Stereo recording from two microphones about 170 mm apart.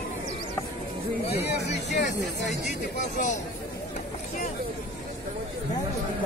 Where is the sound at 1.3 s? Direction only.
75° left (ahead or behind).